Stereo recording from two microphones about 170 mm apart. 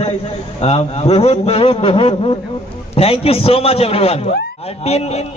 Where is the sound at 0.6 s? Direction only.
35° left (ahead or behind).